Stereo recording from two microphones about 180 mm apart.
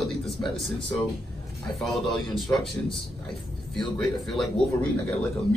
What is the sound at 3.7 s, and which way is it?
Speech, centre (ahead or behind).